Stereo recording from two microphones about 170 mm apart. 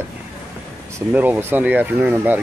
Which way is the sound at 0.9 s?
10° right (ahead or behind).